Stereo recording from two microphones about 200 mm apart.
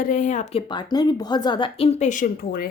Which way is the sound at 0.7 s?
20° left (ahead or behind).